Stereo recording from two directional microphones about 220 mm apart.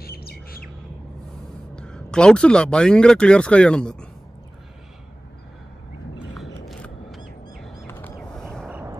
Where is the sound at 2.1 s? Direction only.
5° left (ahead or behind).